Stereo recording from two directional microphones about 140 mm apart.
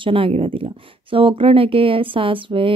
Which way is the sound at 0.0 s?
40° right (ahead or behind).